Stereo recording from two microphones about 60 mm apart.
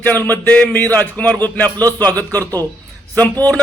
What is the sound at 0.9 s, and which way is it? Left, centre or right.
Speech, left.